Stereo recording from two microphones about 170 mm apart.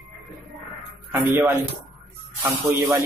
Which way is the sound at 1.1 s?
15° right (ahead or behind).